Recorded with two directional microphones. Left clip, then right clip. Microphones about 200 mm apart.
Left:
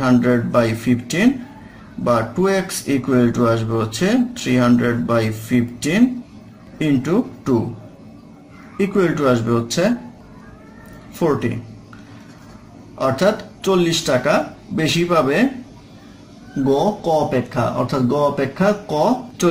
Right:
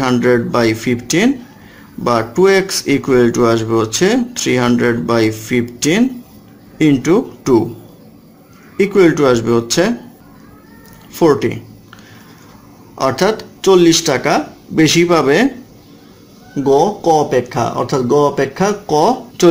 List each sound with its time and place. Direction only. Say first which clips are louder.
0.0 s speech: right 4 dB; 40° right (ahead or behind)
8.7 s speech: right 7 dB; 40° right (ahead or behind)
11.1 s speech: right 7 dB; 45° right (ahead or behind)
12.9 s speech: right 3 dB; 45° right (ahead or behind)
16.6 s speech: right 6 dB; 40° right (ahead or behind)